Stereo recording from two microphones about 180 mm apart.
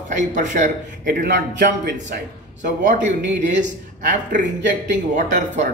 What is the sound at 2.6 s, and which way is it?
A man's voice, 45° right (ahead or behind).